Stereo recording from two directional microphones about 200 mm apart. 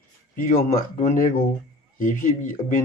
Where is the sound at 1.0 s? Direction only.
40° left (ahead or behind).